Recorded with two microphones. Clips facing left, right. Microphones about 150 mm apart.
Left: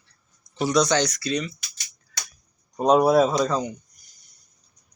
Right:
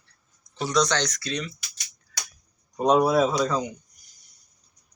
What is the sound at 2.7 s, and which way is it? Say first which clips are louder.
Speech: left 3 dB; centre (ahead or behind).